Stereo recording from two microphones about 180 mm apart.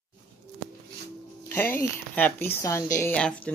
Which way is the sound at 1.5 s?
10° left (ahead or behind).